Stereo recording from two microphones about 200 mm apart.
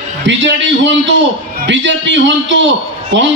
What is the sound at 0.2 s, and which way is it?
A man's voice, 65° right (ahead or behind).